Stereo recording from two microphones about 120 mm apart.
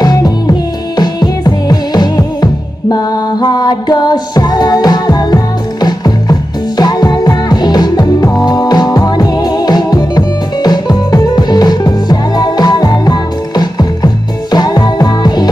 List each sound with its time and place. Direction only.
0.0 s music: 30° left (ahead or behind)